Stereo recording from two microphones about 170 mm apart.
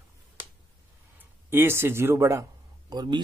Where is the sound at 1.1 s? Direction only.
10° right (ahead or behind).